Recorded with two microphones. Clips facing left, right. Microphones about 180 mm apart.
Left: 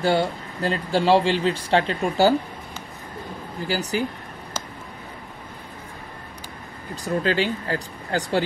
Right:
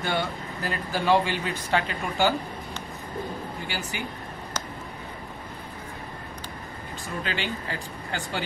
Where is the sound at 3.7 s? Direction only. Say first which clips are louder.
Left 13 dB; 35° left (ahead or behind).